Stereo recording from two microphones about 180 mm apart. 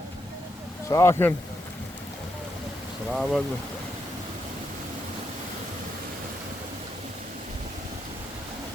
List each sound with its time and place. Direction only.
0.9 s speech: 15° left (ahead or behind)
3.1 s speech: centre (ahead or behind)